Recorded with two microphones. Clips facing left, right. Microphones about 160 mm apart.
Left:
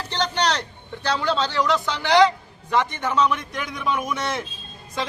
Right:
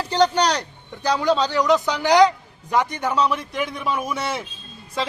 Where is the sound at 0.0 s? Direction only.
10° right (ahead or behind).